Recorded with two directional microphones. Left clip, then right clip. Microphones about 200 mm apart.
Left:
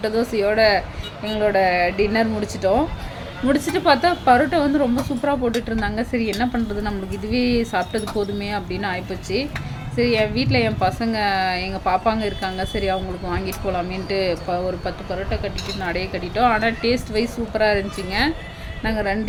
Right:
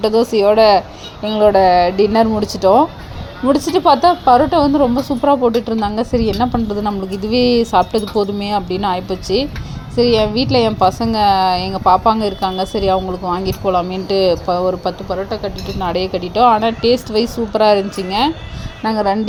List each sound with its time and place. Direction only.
0.0 s a woman's voice: 25° right (ahead or behind)